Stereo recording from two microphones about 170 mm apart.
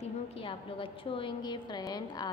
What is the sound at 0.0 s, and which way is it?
A woman's voice, 35° left (ahead or behind).